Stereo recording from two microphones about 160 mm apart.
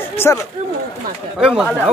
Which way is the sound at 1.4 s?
5° right (ahead or behind).